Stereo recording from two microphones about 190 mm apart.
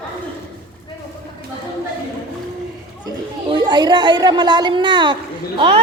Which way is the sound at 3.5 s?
25° right (ahead or behind).